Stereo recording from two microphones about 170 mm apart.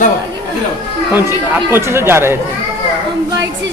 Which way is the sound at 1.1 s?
10° right (ahead or behind).